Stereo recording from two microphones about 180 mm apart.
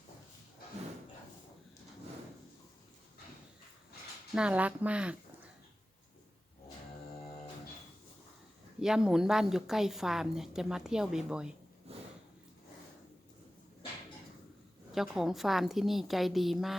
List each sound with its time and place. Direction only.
4.4 s speech: 5° right (ahead or behind)
8.8 s a woman's voice: 5° right (ahead or behind)
11.9 s sniff: 35° right (ahead or behind)
14.9 s a woman's voice: centre (ahead or behind)